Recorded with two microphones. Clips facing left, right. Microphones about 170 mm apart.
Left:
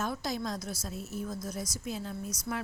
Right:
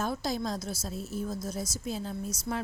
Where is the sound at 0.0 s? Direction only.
30° right (ahead or behind).